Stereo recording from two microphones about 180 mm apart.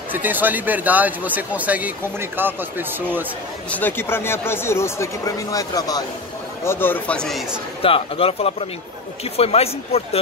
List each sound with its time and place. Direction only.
0.1 s speech: 10° right (ahead or behind)
3.7 s speech: 10° left (ahead or behind)
7.8 s speech: 30° left (ahead or behind)